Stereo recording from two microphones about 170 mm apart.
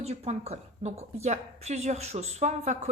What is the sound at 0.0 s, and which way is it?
A woman's voice, 40° right (ahead or behind).